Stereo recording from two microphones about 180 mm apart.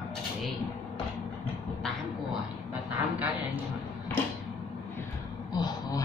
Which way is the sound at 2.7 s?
10° right (ahead or behind).